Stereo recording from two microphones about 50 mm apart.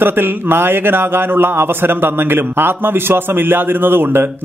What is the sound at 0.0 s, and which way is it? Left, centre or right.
A man's voice, right.